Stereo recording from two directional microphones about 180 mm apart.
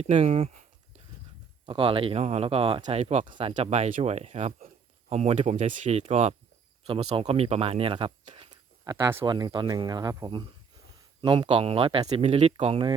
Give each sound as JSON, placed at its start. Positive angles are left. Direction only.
{"t": 0.0, "sound": "speech", "side_deg": -35}
{"t": 1.6, "sound": "speech", "side_deg": -30}
{"t": 3.2, "sound": "speech", "side_deg": -30}
{"t": 8.8, "sound": "speech", "side_deg": -15}